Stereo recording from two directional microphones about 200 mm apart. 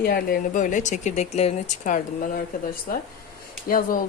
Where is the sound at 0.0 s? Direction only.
45° left (ahead or behind).